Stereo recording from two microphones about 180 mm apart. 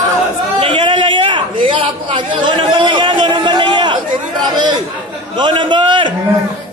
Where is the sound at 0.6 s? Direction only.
30° right (ahead or behind).